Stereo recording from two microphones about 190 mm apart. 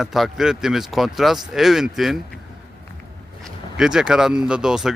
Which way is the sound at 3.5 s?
5° right (ahead or behind).